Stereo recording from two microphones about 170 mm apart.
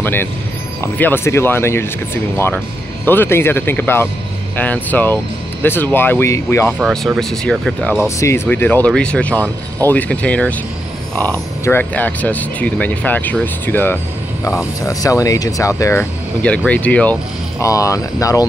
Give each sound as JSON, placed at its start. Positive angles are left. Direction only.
{"t": 0.0, "sound": "speech", "side_deg": 10}
{"t": 6.8, "sound": "speech", "side_deg": 0}
{"t": 8.2, "sound": "speech", "side_deg": 15}
{"t": 11.6, "sound": "speech", "side_deg": 10}